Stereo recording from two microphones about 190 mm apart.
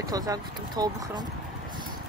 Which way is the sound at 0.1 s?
20° right (ahead or behind).